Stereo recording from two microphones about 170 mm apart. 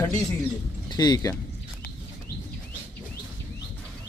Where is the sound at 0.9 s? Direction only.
25° left (ahead or behind).